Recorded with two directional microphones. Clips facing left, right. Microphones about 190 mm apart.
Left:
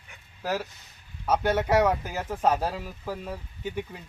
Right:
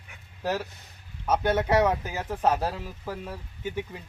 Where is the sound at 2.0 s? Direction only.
10° right (ahead or behind).